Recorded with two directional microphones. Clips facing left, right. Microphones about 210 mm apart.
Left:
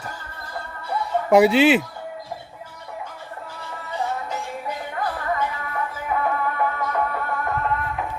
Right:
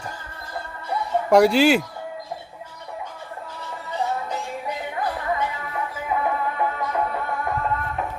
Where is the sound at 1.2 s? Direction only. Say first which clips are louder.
Left 1 dB; 5° left (ahead or behind).